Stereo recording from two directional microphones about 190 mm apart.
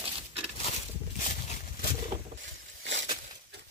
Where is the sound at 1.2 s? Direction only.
40° left (ahead or behind).